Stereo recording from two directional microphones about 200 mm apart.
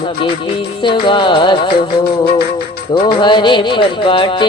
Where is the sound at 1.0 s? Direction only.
25° left (ahead or behind).